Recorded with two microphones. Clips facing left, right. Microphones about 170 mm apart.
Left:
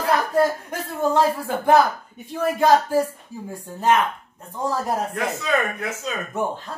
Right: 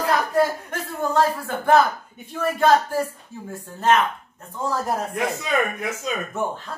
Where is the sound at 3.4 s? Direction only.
10° left (ahead or behind).